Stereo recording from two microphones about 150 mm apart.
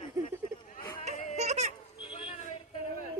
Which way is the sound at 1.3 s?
50° right (ahead or behind).